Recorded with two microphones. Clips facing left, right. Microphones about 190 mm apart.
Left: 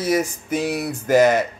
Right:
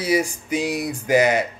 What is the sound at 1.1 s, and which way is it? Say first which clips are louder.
Speech: left 3 dB; 50° left (ahead or behind).